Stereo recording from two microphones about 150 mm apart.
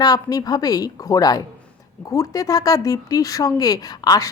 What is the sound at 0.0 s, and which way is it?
A woman's voice, 25° left (ahead or behind).